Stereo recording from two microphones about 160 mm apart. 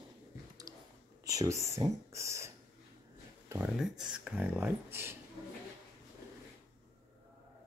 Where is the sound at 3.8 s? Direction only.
5° right (ahead or behind).